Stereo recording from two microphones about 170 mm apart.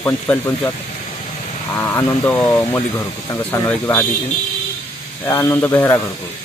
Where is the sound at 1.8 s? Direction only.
15° left (ahead or behind).